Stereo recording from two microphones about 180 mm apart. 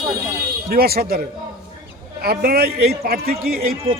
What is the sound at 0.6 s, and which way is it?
Speech, 55° right (ahead or behind).